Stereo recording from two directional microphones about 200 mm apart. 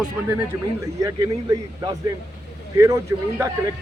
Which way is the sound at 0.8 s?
15° right (ahead or behind).